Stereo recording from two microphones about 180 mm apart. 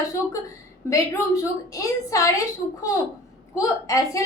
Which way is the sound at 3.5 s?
20° left (ahead or behind).